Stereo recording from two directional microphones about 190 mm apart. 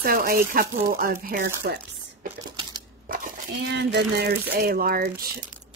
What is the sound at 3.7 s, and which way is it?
Speech, 60° right (ahead or behind).